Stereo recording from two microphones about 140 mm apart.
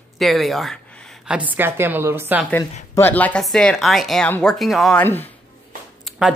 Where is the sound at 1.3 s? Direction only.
10° right (ahead or behind).